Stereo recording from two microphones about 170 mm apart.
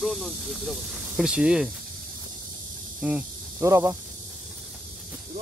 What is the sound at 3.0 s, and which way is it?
Speech, 5° right (ahead or behind).